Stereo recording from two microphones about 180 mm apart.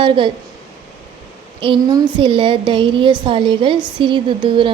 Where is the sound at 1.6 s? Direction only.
30° right (ahead or behind).